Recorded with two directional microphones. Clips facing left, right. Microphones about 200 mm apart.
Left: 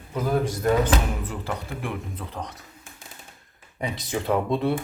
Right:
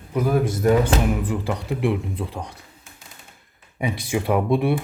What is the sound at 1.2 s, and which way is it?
Speech, 15° right (ahead or behind).